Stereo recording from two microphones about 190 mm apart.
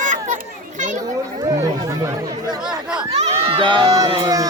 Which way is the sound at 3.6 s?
20° right (ahead or behind).